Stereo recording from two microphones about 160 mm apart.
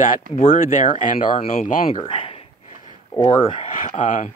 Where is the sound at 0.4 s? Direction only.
55° left (ahead or behind).